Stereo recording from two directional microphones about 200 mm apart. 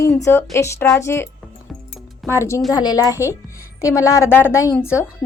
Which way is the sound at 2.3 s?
15° left (ahead or behind).